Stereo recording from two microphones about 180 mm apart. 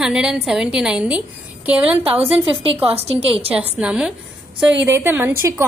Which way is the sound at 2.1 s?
30° right (ahead or behind).